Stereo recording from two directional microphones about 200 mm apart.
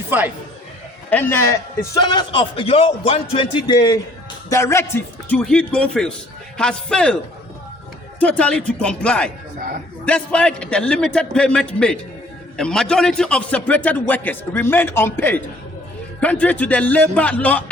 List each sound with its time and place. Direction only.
0.1 s speech: 10° right (ahead or behind)
1.1 s a man's voice: 10° left (ahead or behind)
8.2 s a man's voice: 5° left (ahead or behind)
9.6 s a man's voice: 40° right (ahead or behind)
10.1 s a man's voice: 5° left (ahead or behind)